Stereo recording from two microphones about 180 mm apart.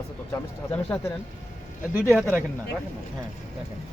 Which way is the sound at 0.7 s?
10° left (ahead or behind).